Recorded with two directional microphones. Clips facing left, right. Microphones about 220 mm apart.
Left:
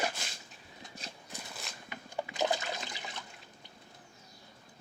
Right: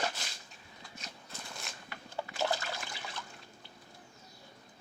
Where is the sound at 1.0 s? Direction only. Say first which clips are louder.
Left 2 dB; 35° left (ahead or behind).